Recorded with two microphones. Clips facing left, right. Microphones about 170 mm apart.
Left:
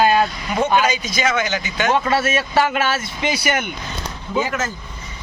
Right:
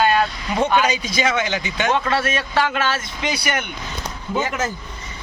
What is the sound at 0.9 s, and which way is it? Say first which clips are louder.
Speech: even; 30° right (ahead or behind).